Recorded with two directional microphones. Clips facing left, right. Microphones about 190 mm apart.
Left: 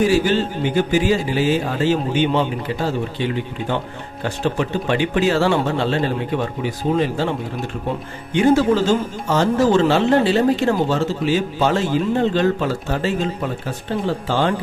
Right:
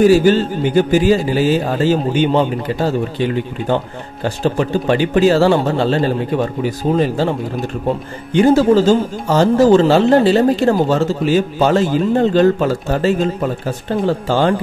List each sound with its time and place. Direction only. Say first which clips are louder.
0.1 s speech: right 6 dB; 40° right (ahead or behind)
8.4 s speech: right 4 dB; 40° right (ahead or behind)